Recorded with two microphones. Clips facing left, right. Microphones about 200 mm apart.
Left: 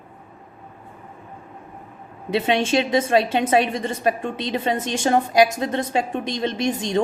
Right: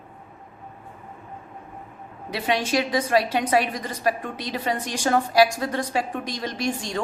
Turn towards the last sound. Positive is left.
turn(degrees=20)  # may be behind; listen again after turning